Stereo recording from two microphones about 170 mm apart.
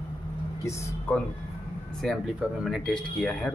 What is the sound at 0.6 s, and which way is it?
Speech, 15° left (ahead or behind).